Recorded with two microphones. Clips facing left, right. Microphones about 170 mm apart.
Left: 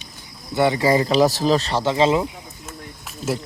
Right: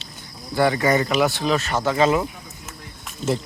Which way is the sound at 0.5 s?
20° left (ahead or behind).